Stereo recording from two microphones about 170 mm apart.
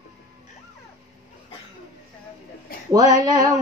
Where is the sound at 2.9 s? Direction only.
20° right (ahead or behind).